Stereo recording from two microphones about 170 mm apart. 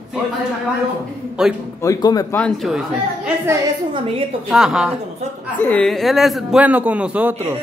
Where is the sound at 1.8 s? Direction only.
20° left (ahead or behind).